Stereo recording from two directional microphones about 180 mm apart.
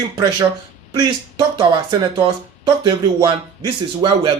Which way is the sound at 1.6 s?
20° right (ahead or behind).